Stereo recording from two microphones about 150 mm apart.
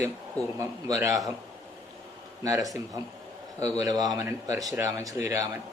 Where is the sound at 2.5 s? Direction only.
Centre (ahead or behind).